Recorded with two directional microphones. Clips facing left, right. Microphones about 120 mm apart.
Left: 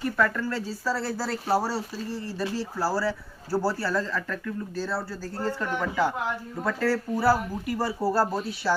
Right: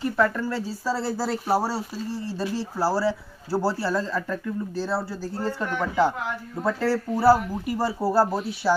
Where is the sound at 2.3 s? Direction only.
30° right (ahead or behind).